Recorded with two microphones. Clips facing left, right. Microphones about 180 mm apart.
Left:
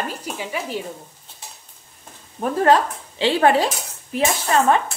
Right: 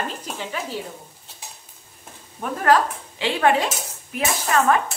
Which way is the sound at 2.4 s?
30° left (ahead or behind).